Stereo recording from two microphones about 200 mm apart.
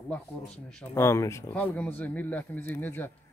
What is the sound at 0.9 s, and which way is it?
Speech, 15° left (ahead or behind).